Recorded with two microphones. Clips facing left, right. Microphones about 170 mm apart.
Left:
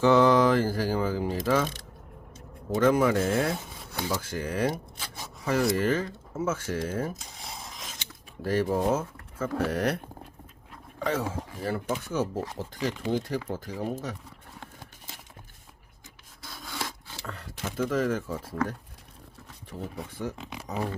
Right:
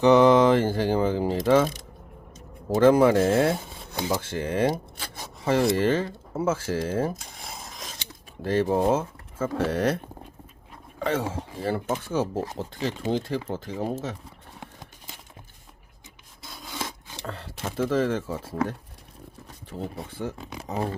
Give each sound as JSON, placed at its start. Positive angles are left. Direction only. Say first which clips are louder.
{"t": 0.0, "sound": "speech", "louder": "right 3 dB", "side_deg": -20}
{"t": 4.9, "sound": "a sound", "louder": "right 2 dB", "side_deg": -50}
{"t": 5.2, "sound": "speech", "louder": "right 3 dB", "side_deg": -25}
{"t": 11.0, "sound": "speech", "louder": "right 2 dB", "side_deg": -25}
{"t": 16.4, "sound": "rub", "louder": "right 2 dB", "side_deg": -20}
{"t": 17.7, "sound": "speech", "louder": "right 3 dB", "side_deg": -30}